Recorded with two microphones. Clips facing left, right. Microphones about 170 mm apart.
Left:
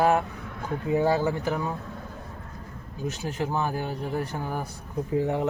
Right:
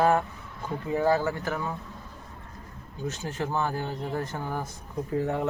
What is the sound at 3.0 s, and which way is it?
Speech, 10° left (ahead or behind).